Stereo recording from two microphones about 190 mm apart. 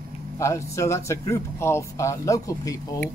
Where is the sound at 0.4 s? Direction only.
15° left (ahead or behind).